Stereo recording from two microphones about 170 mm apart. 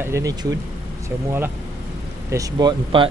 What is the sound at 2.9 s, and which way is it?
Speech, 30° right (ahead or behind).